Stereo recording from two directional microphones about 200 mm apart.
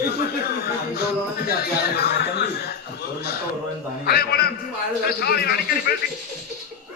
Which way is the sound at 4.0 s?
50° left (ahead or behind).